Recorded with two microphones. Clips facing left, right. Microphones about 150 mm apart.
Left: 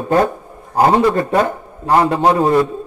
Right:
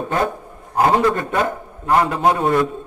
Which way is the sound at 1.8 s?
35° left (ahead or behind).